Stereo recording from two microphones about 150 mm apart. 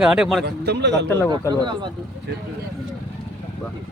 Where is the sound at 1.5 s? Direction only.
30° right (ahead or behind).